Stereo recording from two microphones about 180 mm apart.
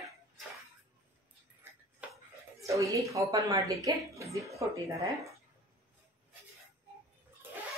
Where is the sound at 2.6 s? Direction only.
15° right (ahead or behind).